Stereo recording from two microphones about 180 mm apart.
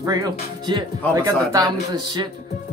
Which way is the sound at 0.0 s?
20° right (ahead or behind).